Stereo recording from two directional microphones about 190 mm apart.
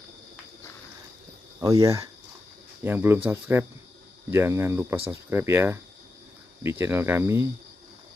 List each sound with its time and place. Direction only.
1.6 s speech: 20° right (ahead or behind)